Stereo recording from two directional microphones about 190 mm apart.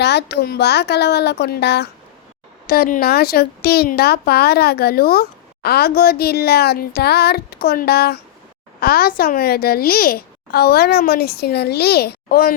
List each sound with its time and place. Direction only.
0.0 s a woman's voice: 60° left (ahead or behind)